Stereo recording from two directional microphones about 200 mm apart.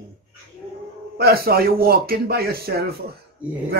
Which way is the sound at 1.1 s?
50° right (ahead or behind).